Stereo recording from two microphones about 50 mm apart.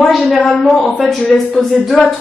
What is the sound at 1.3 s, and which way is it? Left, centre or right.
Speech, left.